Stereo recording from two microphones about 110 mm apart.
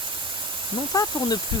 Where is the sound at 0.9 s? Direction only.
30° left (ahead or behind).